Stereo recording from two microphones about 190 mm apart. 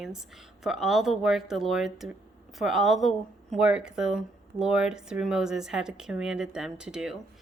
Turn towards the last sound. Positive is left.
turn(degrees=-5)  # may be behind; listen again after turning